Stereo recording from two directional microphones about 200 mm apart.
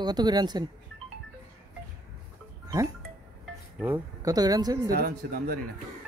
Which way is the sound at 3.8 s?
15° right (ahead or behind).